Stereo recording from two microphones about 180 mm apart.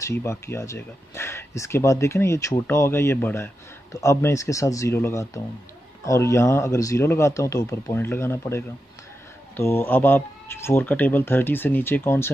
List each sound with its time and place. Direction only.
0.0 s speech: 15° left (ahead or behind)